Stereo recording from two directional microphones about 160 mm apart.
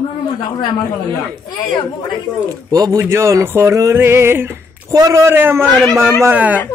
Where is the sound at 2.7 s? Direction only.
20° right (ahead or behind).